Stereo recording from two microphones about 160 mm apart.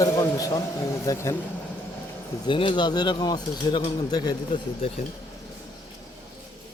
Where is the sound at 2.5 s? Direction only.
30° left (ahead or behind).